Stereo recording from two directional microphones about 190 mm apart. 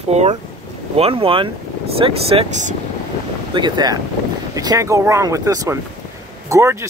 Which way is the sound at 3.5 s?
20° right (ahead or behind).